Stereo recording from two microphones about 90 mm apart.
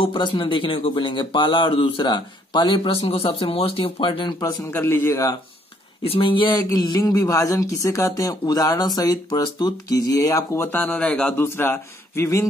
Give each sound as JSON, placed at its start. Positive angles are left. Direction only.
{"t": 0.0, "sound": "speech", "side_deg": 65}
{"t": 2.0, "sound": "speech", "side_deg": 60}
{"t": 4.4, "sound": "a man's voice", "side_deg": 45}
{"t": 4.6, "sound": "speech", "side_deg": 25}
{"t": 6.0, "sound": "speech", "side_deg": 80}
{"t": 6.6, "sound": "speech", "side_deg": 45}
{"t": 10.7, "sound": "speech", "side_deg": 15}
{"t": 11.3, "sound": "speech", "side_deg": 25}